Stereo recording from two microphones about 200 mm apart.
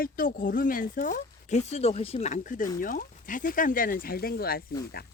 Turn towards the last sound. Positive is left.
turn(degrees=50)  # may be behind; listen again after turning